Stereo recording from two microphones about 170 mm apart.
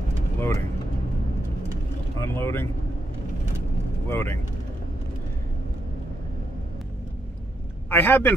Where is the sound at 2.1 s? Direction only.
15° left (ahead or behind).